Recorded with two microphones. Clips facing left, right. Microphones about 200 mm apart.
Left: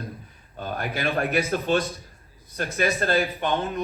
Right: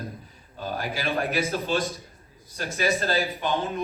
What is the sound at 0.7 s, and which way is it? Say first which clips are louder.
A man's voice: left 2 dB; 55° left (ahead or behind).